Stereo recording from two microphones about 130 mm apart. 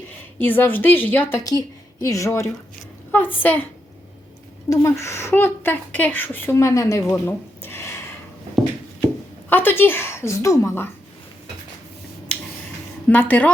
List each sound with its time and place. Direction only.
0.3 s a woman's voice: 15° left (ahead or behind)
1.5 s a woman's voice: 25° left (ahead or behind)
4.7 s a woman's voice: 25° left (ahead or behind)
9.5 s a woman's voice: 15° left (ahead or behind)
13.1 s a woman's voice: 15° left (ahead or behind)